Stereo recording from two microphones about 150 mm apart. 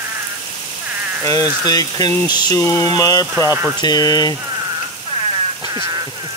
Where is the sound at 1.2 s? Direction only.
20° left (ahead or behind).